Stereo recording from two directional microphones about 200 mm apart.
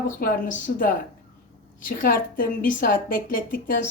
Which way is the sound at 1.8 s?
45° left (ahead or behind).